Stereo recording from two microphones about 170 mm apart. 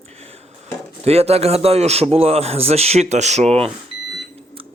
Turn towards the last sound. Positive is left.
turn(degrees=-40)  # may be behind; listen again after turning